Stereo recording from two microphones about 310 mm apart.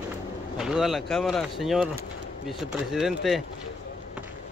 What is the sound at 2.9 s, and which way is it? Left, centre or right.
Speech, centre.